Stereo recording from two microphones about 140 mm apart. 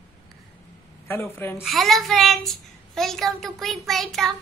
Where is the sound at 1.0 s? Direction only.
15° left (ahead or behind).